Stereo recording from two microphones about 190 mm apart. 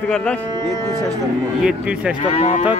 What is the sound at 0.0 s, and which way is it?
Speech, 5° left (ahead or behind).